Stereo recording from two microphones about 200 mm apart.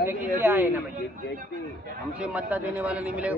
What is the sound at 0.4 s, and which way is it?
Speech, 10° right (ahead or behind).